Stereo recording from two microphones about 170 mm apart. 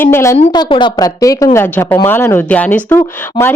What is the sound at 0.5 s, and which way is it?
A woman's voice, 25° left (ahead or behind).